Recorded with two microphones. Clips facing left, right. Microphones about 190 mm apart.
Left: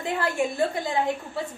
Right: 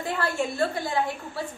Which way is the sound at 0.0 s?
15° left (ahead or behind).